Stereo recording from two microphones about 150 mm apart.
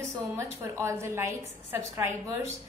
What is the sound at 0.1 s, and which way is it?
A woman's voice, 20° right (ahead or behind).